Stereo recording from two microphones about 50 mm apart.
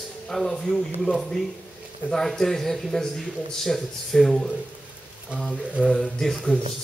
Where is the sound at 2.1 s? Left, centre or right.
Centre.